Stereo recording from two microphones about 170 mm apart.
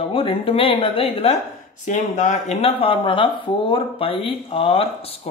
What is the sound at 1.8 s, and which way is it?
Speech, 50° left (ahead or behind).